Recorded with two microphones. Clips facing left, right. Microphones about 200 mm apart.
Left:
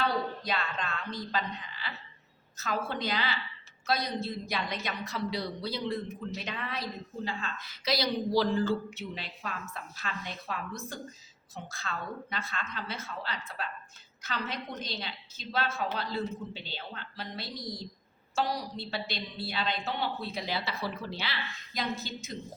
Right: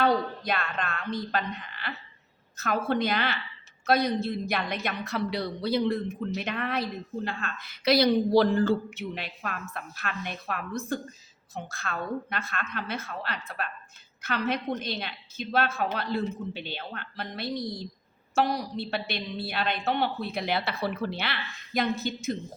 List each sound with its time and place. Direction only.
0.0 s a woman's voice: 55° right (ahead or behind)